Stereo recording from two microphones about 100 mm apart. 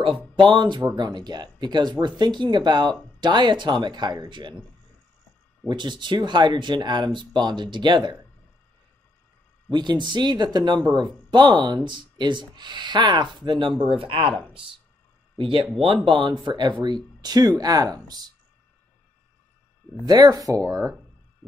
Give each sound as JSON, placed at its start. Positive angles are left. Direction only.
{"t": 0.0, "sound": "speech", "side_deg": -55}
{"t": 5.7, "sound": "speech", "side_deg": -50}
{"t": 9.7, "sound": "speech", "side_deg": -50}
{"t": 15.3, "sound": "speech", "side_deg": -55}
{"t": 20.1, "sound": "speech", "side_deg": -40}